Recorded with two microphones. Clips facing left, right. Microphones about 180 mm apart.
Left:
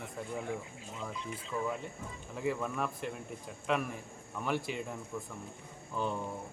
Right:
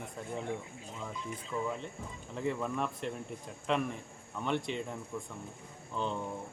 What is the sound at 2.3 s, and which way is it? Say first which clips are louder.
Speech: even; 5° left (ahead or behind).